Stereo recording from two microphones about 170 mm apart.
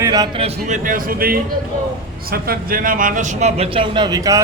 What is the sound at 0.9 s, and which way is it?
A man's voice, 55° right (ahead or behind).